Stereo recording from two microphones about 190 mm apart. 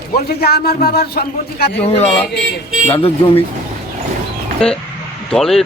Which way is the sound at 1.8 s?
35° left (ahead or behind).